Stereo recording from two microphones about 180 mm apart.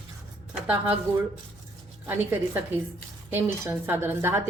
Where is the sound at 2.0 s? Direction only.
10° right (ahead or behind).